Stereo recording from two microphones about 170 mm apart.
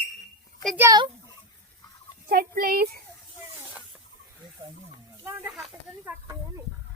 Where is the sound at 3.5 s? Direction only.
15° right (ahead or behind).